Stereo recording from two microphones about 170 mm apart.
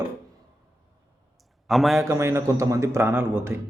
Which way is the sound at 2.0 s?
15° right (ahead or behind).